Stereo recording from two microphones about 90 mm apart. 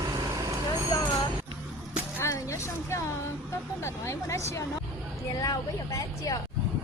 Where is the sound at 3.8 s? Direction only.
30° left (ahead or behind).